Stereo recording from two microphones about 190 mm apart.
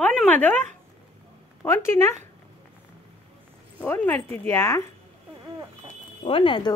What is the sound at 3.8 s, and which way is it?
Speech, 10° left (ahead or behind).